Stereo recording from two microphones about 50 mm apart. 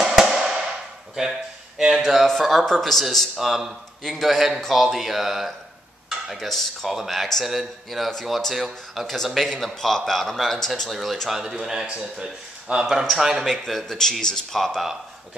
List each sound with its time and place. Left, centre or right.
0.0 s a sound: centre
2.0 s a man's voice: centre
6.3 s a man's voice: centre
11.3 s speech: centre
12.8 s a man's voice: centre